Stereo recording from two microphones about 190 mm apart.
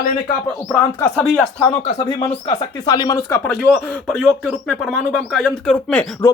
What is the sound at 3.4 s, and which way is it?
Speech, 5° left (ahead or behind).